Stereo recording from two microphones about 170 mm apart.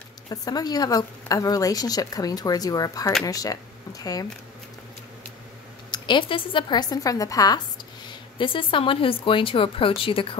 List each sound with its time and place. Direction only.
0.3 s a woman's voice: 20° left (ahead or behind)
5.9 s a woman's voice: 30° left (ahead or behind)